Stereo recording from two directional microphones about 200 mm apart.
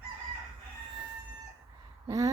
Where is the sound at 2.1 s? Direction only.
15° right (ahead or behind).